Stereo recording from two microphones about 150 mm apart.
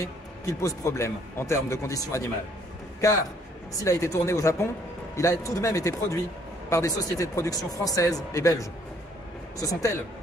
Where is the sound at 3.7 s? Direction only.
20° left (ahead or behind).